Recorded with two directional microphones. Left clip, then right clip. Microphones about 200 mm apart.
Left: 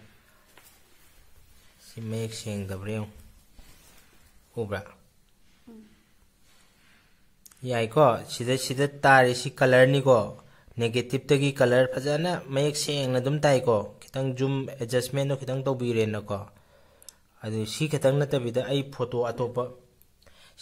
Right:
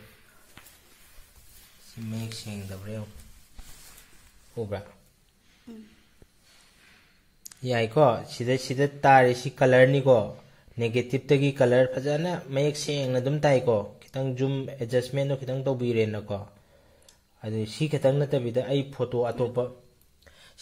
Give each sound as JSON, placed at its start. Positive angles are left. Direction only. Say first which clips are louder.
{"t": 1.9, "sound": "speech", "louder": "left 5 dB", "side_deg": 55}
{"t": 4.6, "sound": "speech", "louder": "left 1 dB", "side_deg": 10}
{"t": 7.4, "sound": "a man's voice", "louder": "right 1 dB", "side_deg": -5}